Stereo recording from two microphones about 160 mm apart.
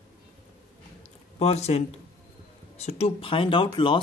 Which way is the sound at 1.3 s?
40° left (ahead or behind).